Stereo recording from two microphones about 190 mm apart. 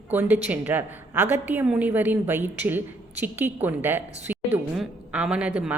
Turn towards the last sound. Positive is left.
turn(degrees=-5)  # may be behind; listen again after turning